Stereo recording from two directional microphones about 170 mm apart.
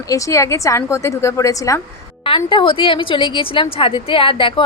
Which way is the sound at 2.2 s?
30° left (ahead or behind).